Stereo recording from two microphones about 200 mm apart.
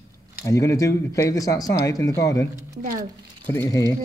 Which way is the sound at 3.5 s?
15° left (ahead or behind).